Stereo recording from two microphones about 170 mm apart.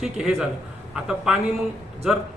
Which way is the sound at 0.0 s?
5° right (ahead or behind).